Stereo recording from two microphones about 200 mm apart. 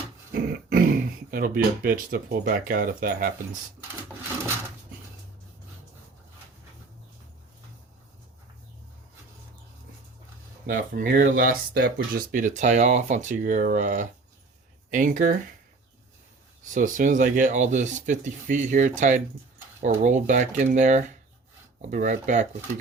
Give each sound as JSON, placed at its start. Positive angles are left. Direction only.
{"t": 0.3, "sound": "dog", "side_deg": -50}
{"t": 1.3, "sound": "speech", "side_deg": -45}
{"t": 10.7, "sound": "speech", "side_deg": -45}
{"t": 12.3, "sound": "speech", "side_deg": -40}
{"t": 16.7, "sound": "speech", "side_deg": -40}